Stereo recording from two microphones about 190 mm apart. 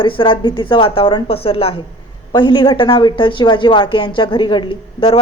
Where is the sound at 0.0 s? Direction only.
25° left (ahead or behind).